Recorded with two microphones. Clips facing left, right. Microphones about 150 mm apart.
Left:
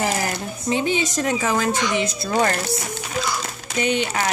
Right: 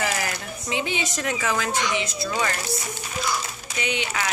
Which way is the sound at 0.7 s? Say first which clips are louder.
Left 6 dB; 40° left (ahead or behind).